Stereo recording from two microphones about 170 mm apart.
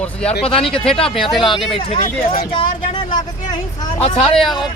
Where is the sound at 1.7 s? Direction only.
35° left (ahead or behind).